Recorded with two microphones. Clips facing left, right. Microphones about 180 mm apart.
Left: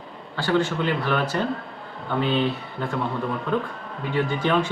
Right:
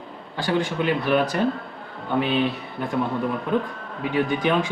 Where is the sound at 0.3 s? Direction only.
15° right (ahead or behind).